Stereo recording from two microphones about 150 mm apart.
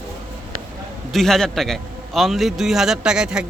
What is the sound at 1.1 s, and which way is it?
Speech, centre (ahead or behind).